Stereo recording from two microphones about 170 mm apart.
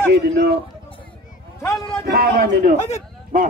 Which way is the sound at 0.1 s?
70° right (ahead or behind).